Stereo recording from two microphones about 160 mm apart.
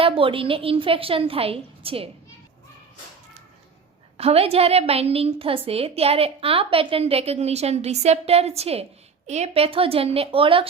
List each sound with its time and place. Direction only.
0.0 s a woman's voice: 35° right (ahead or behind)
4.2 s a woman's voice: 40° right (ahead or behind)